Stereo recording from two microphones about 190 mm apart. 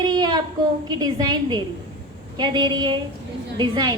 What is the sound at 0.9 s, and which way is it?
A woman's voice, 20° right (ahead or behind).